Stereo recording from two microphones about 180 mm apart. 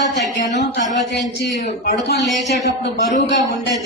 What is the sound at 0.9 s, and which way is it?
A man's voice, 80° left.